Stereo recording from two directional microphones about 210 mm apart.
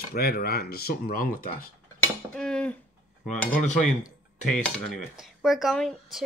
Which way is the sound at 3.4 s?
40° left (ahead or behind).